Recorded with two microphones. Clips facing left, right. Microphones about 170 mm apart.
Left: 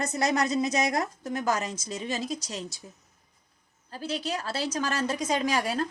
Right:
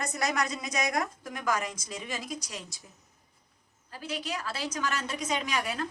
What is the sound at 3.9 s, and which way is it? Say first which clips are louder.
A woman's voice: left 4 dB; 35° left (ahead or behind).